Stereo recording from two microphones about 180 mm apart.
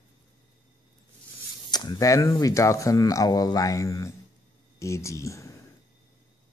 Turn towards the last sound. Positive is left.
turn(degrees=15)  # may be behind; listen again after turning